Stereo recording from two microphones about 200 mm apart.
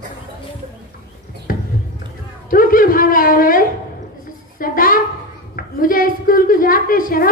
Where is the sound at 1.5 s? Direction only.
45° left (ahead or behind).